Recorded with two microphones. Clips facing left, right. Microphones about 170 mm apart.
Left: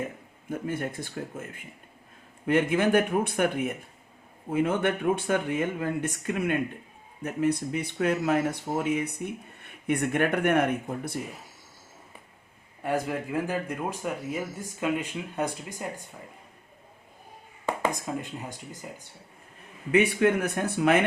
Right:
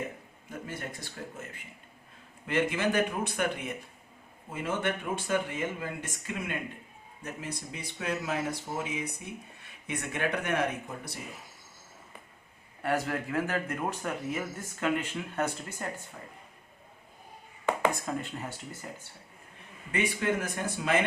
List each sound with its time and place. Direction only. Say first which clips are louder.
0.7 s speech: left 8 dB; 55° left (ahead or behind)
12.8 s speech: left 2 dB; 15° left (ahead or behind)
17.7 s speech: even; 15° left (ahead or behind)
19.9 s speech: left 8 dB; 60° left (ahead or behind)